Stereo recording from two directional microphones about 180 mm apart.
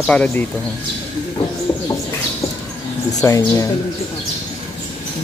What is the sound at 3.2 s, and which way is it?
Speech, 15° left (ahead or behind).